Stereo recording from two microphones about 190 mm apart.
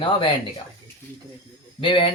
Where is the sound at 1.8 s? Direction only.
25° left (ahead or behind).